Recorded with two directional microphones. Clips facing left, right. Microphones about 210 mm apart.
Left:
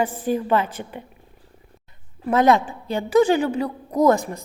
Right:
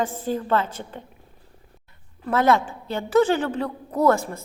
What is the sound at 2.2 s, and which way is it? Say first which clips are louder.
A woman's voice: left 3 dB; 15° left (ahead or behind).